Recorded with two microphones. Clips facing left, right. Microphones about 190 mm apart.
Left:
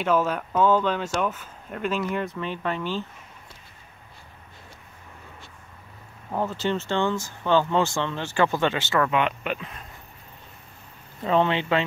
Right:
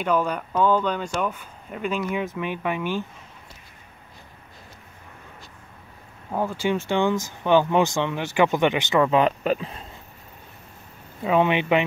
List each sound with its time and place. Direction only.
0.0 s speech: 5° left (ahead or behind); by 3.1 s 15° right (ahead or behind)
6.3 s speech: 10° right (ahead or behind)
9.1 s speech: 35° right (ahead or behind)
11.2 s speech: 10° right (ahead or behind)